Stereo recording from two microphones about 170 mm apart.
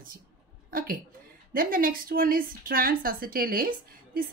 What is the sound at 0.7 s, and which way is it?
A woman's voice, 55° right (ahead or behind).